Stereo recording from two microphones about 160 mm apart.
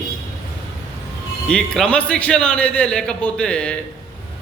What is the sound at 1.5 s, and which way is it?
A man's voice, 5° left (ahead or behind).